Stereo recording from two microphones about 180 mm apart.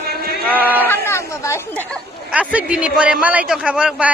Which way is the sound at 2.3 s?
5° right (ahead or behind).